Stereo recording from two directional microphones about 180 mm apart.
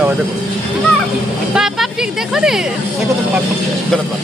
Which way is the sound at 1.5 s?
Centre (ahead or behind).